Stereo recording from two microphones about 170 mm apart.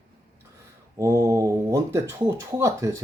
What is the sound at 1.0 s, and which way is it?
Speech, 15° right (ahead or behind).